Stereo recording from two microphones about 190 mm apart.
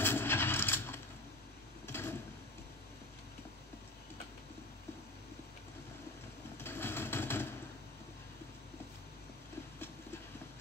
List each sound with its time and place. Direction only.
0.0 s vehicle: 10° left (ahead or behind)
1.9 s sewing machine: 10° left (ahead or behind)
6.6 s vehicle: 10° left (ahead or behind)